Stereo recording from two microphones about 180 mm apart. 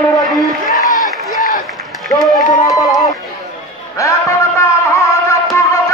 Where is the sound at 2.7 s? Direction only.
Centre (ahead or behind).